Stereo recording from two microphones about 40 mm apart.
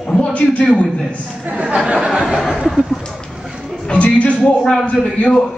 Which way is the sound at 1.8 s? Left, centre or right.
Centre.